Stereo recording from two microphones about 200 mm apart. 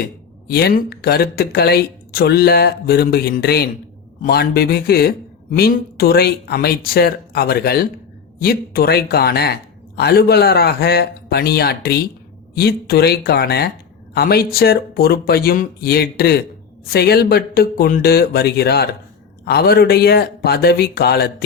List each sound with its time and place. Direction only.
0.0 s speech: 50° left (ahead or behind)